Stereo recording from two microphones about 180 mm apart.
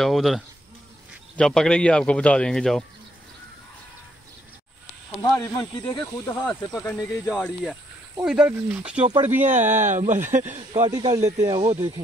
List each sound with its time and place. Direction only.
0.0 s speech: centre (ahead or behind)
5.4 s speech: 10° left (ahead or behind)
8.2 s speech: 10° right (ahead or behind)
9.0 s speech: 35° right (ahead or behind)
10.9 s speech: 20° right (ahead or behind)